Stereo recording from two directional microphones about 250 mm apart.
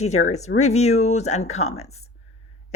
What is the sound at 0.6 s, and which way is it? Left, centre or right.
Speech, left.